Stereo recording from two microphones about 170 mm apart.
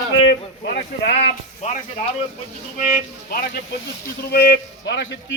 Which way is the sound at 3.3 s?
60° left (ahead or behind).